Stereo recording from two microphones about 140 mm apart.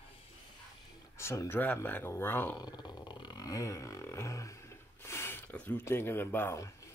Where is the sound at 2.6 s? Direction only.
30° left (ahead or behind).